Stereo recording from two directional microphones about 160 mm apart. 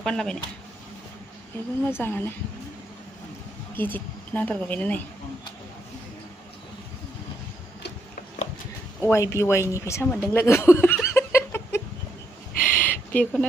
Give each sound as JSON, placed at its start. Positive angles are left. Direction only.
{"t": 0.0, "sound": "speech", "side_deg": 5}
{"t": 1.9, "sound": "speech", "side_deg": 15}
{"t": 3.7, "sound": "speech", "side_deg": 10}
{"t": 9.0, "sound": "speech", "side_deg": 15}
{"t": 11.1, "sound": "a sound", "side_deg": 15}
{"t": 12.7, "sound": "bird", "side_deg": 10}